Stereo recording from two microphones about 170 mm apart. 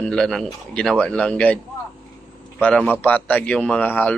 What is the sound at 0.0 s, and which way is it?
A man's voice, 5° left (ahead or behind).